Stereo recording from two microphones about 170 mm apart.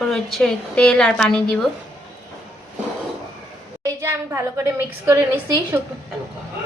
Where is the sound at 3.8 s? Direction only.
15° right (ahead or behind).